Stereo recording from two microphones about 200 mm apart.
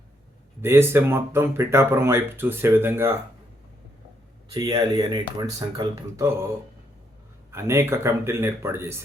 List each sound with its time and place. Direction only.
0.6 s speech: 10° right (ahead or behind)
4.5 s speech: 20° right (ahead or behind)
7.5 s speech: 15° right (ahead or behind)